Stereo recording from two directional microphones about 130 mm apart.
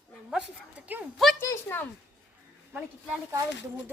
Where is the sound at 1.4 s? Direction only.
20° left (ahead or behind).